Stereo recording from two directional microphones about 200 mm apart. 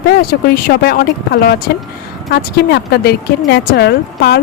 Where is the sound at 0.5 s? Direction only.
55° left (ahead or behind).